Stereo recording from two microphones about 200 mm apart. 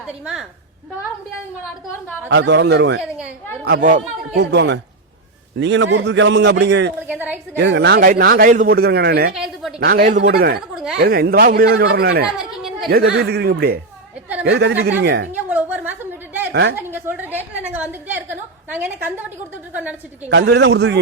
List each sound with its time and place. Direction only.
0.0 s speech: centre (ahead or behind)
2.3 s speech: 60° right (ahead or behind)
3.6 s a man's voice: 50° right (ahead or behind)
4.4 s speech: 60° right (ahead or behind)
7.1 s a woman's voice: 10° right (ahead or behind)
7.5 s a man's voice: 60° right (ahead or behind)
9.3 s speech: centre (ahead or behind)
9.9 s a man's voice: 45° right (ahead or behind)
10.2 s speech: 65° right (ahead or behind)
10.9 s a man's voice: 55° right (ahead or behind)
15.3 s a sound: 10° right (ahead or behind)
16.5 s a woman's voice: 55° right (ahead or behind)
16.9 s a woman's voice: 10° right (ahead or behind)
20.3 s speech: 60° right (ahead or behind)